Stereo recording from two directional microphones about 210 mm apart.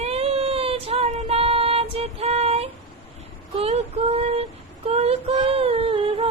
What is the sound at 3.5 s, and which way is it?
Child singing, 30° right (ahead or behind).